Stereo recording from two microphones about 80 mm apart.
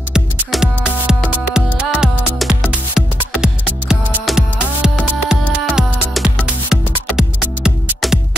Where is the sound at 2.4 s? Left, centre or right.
Centre.